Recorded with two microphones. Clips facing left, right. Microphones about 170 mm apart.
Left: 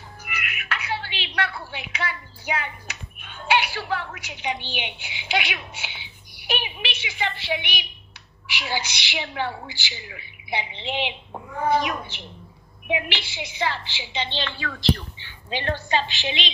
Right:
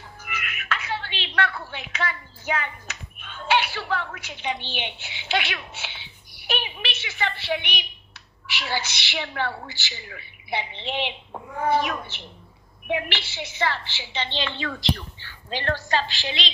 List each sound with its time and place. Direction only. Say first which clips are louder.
0.2 s a sound: even; 10° left (ahead or behind)
0.9 s a woman's voice: even; 10° left (ahead or behind)
15.5 s a woman's voice: even; 15° left (ahead or behind)